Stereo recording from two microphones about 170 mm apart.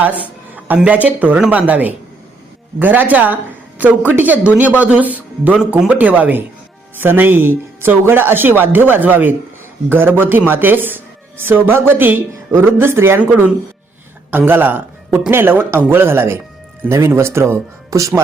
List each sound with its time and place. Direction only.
0.0 s speech: 10° right (ahead or behind)